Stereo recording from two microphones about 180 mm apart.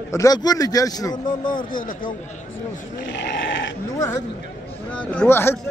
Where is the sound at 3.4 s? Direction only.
90° left.